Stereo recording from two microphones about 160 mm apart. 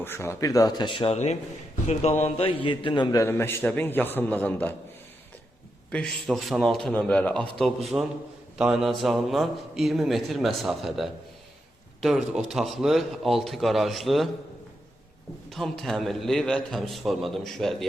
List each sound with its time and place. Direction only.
0.0 s speech: 15° left (ahead or behind)
3.2 s a man's voice: 15° left (ahead or behind)
5.9 s a man's voice: 5° left (ahead or behind)
7.9 s a man's voice: 10° right (ahead or behind)
15.4 s a man's voice: centre (ahead or behind)